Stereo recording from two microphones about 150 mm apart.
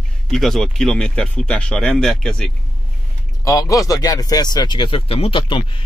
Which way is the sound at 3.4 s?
25° left (ahead or behind).